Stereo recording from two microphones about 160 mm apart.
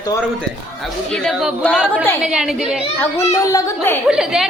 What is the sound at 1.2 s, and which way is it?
Speech, 5° left (ahead or behind).